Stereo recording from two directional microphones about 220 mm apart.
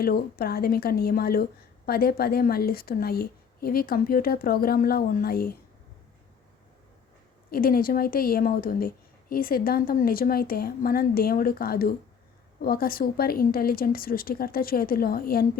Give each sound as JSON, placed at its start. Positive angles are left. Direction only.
{"t": 0.0, "sound": "a woman's voice", "side_deg": 45}
{"t": 7.5, "sound": "a woman's voice", "side_deg": 40}